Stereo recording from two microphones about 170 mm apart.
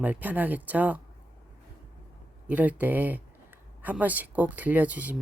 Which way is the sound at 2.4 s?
10° right (ahead or behind).